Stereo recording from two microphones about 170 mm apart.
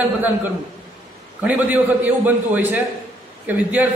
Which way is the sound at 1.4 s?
10° right (ahead or behind).